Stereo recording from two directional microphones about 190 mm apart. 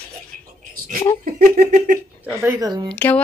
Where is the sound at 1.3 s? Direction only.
50° right (ahead or behind).